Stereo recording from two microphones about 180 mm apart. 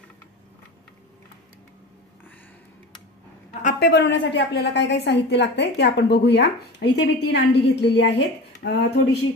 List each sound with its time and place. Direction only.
3.6 s a woman's voice: 65° left (ahead or behind)